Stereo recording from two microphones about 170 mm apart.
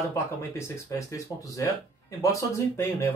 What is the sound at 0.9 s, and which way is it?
Speech, 20° left (ahead or behind).